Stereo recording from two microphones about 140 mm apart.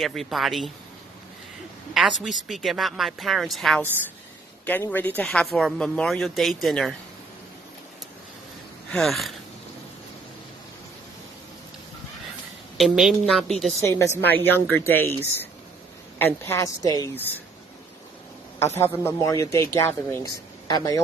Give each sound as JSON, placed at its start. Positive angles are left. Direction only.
{"t": 0.0, "sound": "speech", "side_deg": 0}
{"t": 2.0, "sound": "speech", "side_deg": 0}
{"t": 4.9, "sound": "speech", "side_deg": 10}
{"t": 8.9, "sound": "speech", "side_deg": 0}
{"t": 12.7, "sound": "speech", "side_deg": 0}
{"t": 13.7, "sound": "speech", "side_deg": 20}
{"t": 18.8, "sound": "speech", "side_deg": 15}